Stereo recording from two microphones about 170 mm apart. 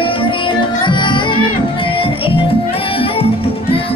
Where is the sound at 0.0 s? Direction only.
30° left (ahead or behind).